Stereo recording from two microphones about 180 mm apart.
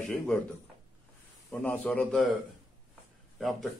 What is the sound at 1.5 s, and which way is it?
Speech, 10° left (ahead or behind).